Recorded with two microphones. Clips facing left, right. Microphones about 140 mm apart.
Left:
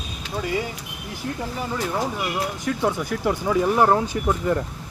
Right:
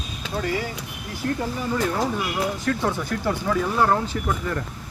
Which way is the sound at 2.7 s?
10° left (ahead or behind).